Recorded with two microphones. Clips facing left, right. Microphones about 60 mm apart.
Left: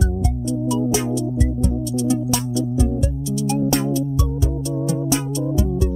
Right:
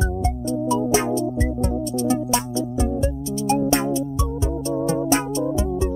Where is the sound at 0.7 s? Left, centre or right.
Right.